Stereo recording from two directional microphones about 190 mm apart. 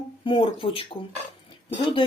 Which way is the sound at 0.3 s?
25° left (ahead or behind).